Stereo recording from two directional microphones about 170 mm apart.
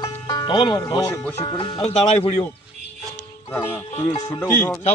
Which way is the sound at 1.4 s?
30° left (ahead or behind).